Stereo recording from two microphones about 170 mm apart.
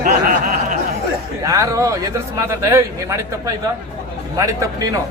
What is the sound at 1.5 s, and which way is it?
A man's voice, 20° right (ahead or behind).